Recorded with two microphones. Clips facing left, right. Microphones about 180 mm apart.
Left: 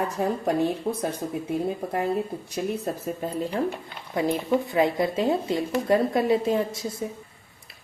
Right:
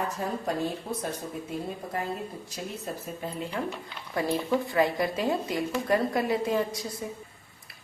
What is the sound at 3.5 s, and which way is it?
Speech, 35° left (ahead or behind).